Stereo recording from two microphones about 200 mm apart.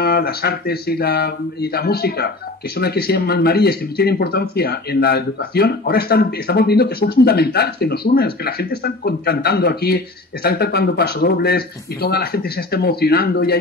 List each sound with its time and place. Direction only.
0.0 s speech: 50° left (ahead or behind)